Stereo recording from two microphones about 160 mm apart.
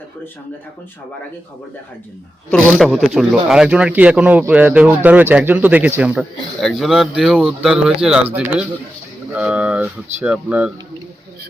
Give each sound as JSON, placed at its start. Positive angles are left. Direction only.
{"t": 2.7, "sound": "speech", "side_deg": 0}